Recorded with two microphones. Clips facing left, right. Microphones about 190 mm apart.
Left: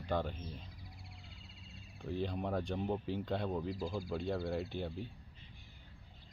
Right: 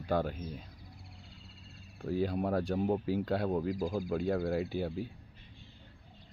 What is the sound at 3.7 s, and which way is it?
Speech, 45° right (ahead or behind).